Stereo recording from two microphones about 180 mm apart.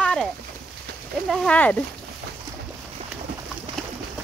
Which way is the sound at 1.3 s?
5° left (ahead or behind).